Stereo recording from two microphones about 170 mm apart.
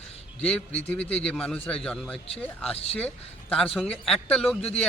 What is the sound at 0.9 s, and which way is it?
A man's voice, 10° left (ahead or behind).